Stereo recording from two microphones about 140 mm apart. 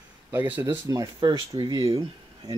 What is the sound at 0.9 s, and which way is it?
Speech, 30° right (ahead or behind).